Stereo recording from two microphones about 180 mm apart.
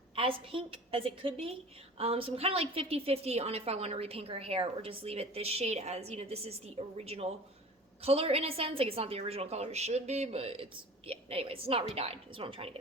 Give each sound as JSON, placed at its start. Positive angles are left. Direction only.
{"t": 0.2, "sound": "a woman's voice", "side_deg": -30}